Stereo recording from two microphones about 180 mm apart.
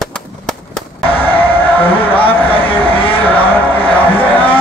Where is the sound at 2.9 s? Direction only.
30° left (ahead or behind).